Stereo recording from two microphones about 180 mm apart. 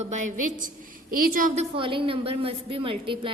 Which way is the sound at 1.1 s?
55° right (ahead or behind).